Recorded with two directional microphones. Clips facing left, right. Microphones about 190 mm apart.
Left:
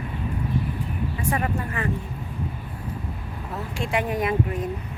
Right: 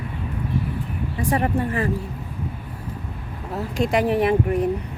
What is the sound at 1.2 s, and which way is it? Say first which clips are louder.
Speech: right 6 dB; 35° right (ahead or behind).